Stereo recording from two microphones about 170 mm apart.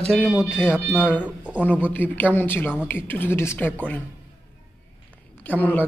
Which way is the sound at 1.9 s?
10° left (ahead or behind).